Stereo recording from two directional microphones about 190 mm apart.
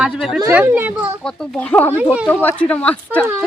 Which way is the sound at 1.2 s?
5° left (ahead or behind).